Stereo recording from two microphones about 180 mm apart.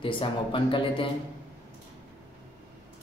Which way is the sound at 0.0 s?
30° left (ahead or behind).